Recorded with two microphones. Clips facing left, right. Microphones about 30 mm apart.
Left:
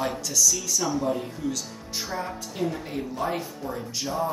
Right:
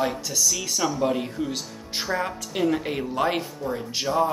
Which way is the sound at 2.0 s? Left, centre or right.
Right.